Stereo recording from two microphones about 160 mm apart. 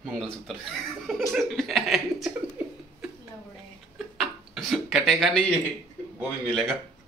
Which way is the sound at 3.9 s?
Centre (ahead or behind).